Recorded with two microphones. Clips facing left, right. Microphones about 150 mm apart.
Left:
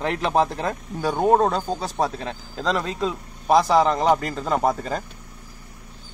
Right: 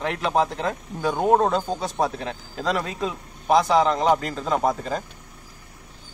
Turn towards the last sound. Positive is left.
turn(degrees=0)  # may be behind; listen again after turning